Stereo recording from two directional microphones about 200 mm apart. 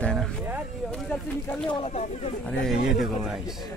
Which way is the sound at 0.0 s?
Centre (ahead or behind).